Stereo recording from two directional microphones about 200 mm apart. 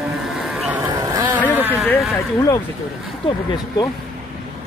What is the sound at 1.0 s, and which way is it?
Vehicle, 20° right (ahead or behind).